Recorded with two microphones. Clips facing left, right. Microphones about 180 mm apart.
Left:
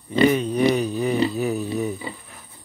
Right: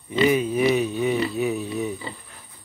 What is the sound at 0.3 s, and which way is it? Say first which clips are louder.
Speech: even; 5° right (ahead or behind).